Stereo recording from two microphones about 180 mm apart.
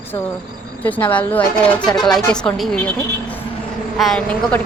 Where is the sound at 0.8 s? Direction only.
10° left (ahead or behind).